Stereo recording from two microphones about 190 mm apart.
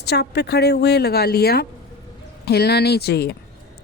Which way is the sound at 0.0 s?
60° left (ahead or behind).